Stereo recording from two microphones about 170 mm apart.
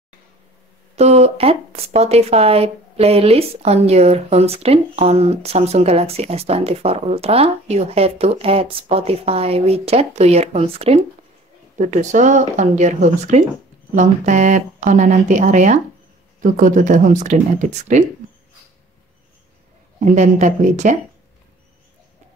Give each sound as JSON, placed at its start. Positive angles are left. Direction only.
{"t": 0.9, "sound": "speech", "side_deg": -40}
{"t": 11.8, "sound": "speech", "side_deg": -45}
{"t": 20.1, "sound": "speech", "side_deg": -45}